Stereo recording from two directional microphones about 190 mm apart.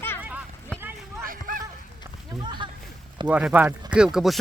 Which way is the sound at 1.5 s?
45° right (ahead or behind).